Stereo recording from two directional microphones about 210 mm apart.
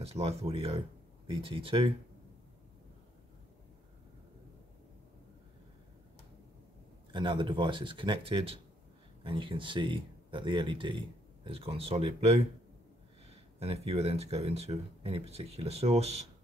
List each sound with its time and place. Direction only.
0.0 s speech: 30° right (ahead or behind)
7.1 s speech: 20° right (ahead or behind)